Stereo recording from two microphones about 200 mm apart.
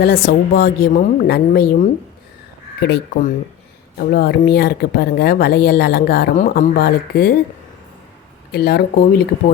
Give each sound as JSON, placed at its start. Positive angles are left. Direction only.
{"t": 0.0, "sound": "speech", "side_deg": 50}
{"t": 8.5, "sound": "speech", "side_deg": 50}